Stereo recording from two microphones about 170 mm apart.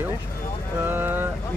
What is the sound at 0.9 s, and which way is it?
Speech, 10° right (ahead or behind).